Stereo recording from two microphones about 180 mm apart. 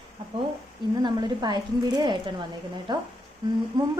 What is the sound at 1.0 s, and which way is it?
Speech, 25° right (ahead or behind).